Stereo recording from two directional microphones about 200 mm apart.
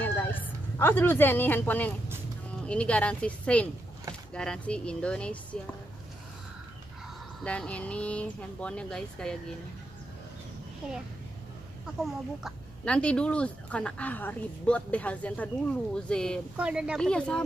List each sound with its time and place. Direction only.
0.0 s a sound: 10° left (ahead or behind)
2.6 s speech: 5° left (ahead or behind)
7.4 s speech: 5° left (ahead or behind)
12.4 s speech: 5° left (ahead or behind)